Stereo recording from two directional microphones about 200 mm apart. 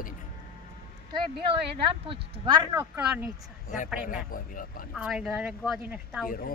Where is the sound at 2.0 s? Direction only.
25° right (ahead or behind).